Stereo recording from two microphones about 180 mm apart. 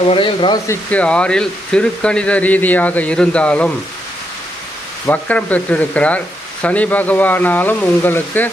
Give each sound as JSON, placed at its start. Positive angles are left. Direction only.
{"t": 0.1, "sound": "speech", "side_deg": 25}
{"t": 0.7, "sound": "speech", "side_deg": 10}
{"t": 5.0, "sound": "speech", "side_deg": 10}